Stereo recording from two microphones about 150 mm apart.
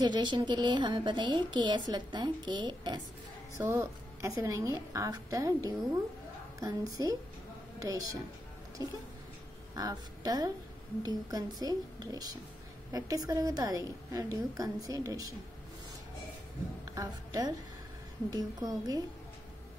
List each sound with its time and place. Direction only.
0.0 s a woman's voice: 30° right (ahead or behind)
3.5 s a woman's voice: 20° right (ahead or behind)
16.9 s a woman's voice: 20° right (ahead or behind)